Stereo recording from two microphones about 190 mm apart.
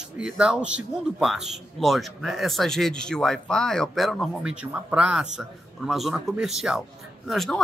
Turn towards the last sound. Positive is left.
turn(degrees=0)  # may be behind; listen again after turning